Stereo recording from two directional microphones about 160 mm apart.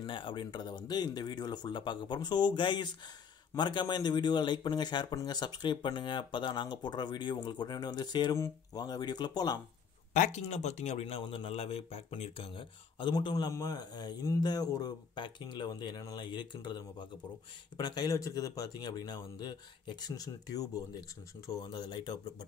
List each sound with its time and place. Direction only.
0.0 s speech: 30° left (ahead or behind)
10.1 s speech: 50° left (ahead or behind); by 22.1 s 25° left (ahead or behind)